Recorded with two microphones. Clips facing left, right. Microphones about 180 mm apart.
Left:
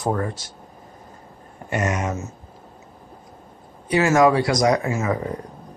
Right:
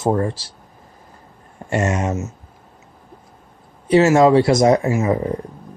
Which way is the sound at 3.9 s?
25° right (ahead or behind).